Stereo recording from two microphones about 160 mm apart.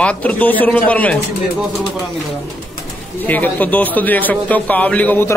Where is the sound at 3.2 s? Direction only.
10° left (ahead or behind).